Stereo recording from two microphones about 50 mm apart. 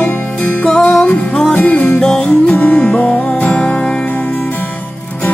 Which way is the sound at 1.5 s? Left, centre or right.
Left.